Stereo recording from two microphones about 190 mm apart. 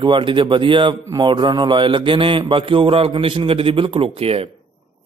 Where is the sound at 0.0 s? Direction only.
25° right (ahead or behind).